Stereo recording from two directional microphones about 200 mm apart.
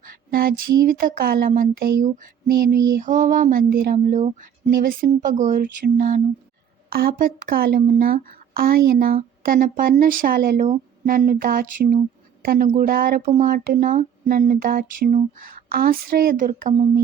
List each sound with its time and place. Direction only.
0.3 s speech: 50° right (ahead or behind)
2.0 s a sound: 45° right (ahead or behind)
3.0 s music: 40° right (ahead or behind)
6.9 s speech: 45° right (ahead or behind)